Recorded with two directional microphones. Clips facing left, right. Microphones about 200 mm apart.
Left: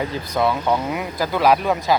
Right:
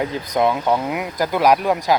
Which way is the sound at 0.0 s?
15° right (ahead or behind).